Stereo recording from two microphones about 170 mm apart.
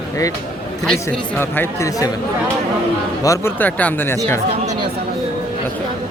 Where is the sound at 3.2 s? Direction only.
15° left (ahead or behind).